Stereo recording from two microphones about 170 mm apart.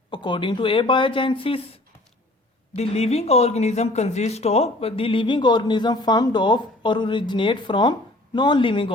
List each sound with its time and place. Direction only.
0.1 s speech: 30° left (ahead or behind)